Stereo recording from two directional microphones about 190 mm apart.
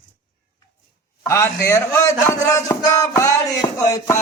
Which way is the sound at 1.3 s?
15° left (ahead or behind).